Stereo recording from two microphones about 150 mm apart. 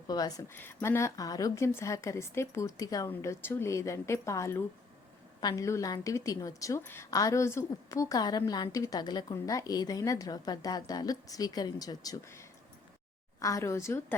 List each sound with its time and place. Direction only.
0.1 s a woman's voice: 25° left (ahead or behind)